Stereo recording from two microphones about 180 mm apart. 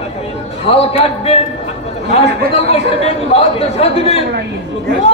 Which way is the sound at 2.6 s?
35° left (ahead or behind).